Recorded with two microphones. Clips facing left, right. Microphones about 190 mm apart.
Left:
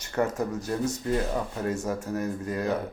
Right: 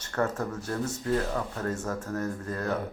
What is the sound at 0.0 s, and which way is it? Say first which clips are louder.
Speech: left 2 dB; 10° left (ahead or behind).